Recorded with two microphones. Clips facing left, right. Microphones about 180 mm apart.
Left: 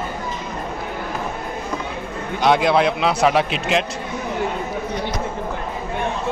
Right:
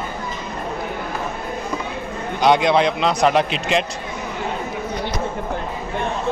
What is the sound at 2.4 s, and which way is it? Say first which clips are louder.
A man's voice: right 1 dB; centre (ahead or behind).